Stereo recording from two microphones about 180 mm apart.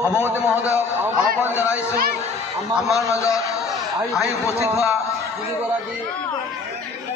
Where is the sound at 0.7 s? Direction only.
15° left (ahead or behind).